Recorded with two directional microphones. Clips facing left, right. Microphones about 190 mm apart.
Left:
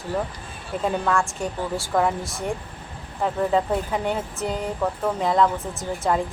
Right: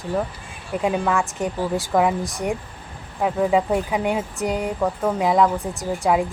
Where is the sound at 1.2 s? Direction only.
20° right (ahead or behind).